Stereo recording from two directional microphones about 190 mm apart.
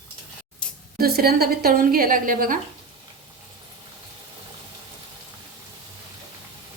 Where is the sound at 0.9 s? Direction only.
55° right (ahead or behind).